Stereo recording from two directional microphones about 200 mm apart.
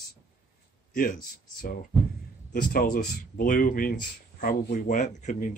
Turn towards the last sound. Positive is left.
turn(degrees=40)  # may be behind; listen again after turning